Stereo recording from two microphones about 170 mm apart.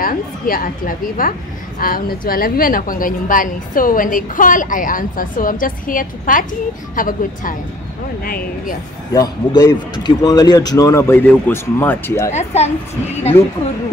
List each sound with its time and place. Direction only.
0.0 s a woman's voice: 55° left (ahead or behind)
9.1 s speech: 20° left (ahead or behind)
12.3 s speech: 40° left (ahead or behind)
13.4 s speech: 15° left (ahead or behind)